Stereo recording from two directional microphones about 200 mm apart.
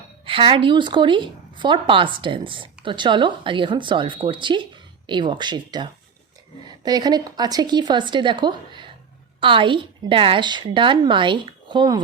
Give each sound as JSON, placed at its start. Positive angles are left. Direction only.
{"t": 0.3, "sound": "speech", "side_deg": -25}